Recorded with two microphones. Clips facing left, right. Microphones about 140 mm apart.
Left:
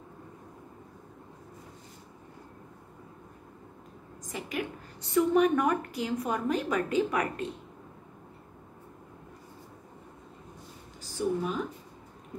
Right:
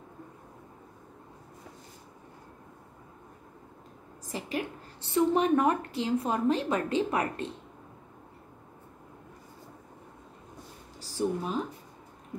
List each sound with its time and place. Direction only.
4.2 s a woman's voice: 30° right (ahead or behind)
11.0 s a woman's voice: 35° right (ahead or behind)